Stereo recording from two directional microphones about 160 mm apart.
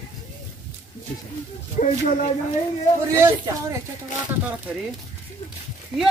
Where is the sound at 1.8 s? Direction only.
45° left (ahead or behind).